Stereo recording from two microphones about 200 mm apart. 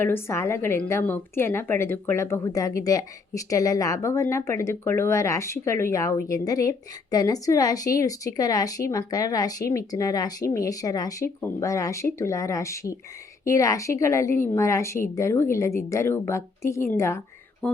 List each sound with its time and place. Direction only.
0.0 s a woman's voice: 10° left (ahead or behind)
17.6 s music: 5° left (ahead or behind)